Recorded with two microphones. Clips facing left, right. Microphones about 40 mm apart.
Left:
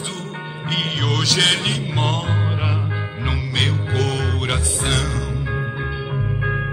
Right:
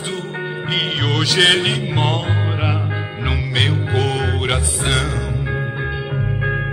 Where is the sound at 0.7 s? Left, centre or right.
Centre.